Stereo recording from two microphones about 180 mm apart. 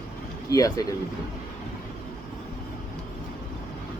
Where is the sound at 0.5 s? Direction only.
20° left (ahead or behind).